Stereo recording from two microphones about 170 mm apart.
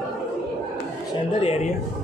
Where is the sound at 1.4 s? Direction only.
40° left (ahead or behind).